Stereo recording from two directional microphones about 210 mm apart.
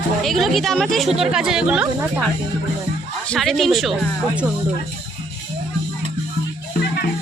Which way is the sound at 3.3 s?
Centre (ahead or behind).